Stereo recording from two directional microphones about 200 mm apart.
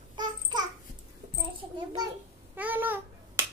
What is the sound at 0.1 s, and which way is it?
Babbling, 20° right (ahead or behind).